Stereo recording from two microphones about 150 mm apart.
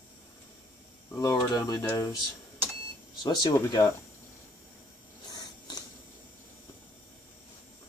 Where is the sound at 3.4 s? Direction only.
25° left (ahead or behind).